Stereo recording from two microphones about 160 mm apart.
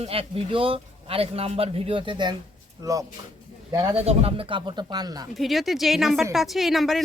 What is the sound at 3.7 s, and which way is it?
Speech, 25° right (ahead or behind).